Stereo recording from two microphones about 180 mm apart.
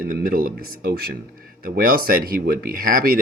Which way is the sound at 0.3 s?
55° right (ahead or behind).